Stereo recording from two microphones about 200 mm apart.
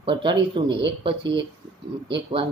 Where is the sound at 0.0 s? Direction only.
25° right (ahead or behind).